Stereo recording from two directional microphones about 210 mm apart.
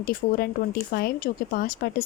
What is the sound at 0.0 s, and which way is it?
Speech, 45° left (ahead or behind).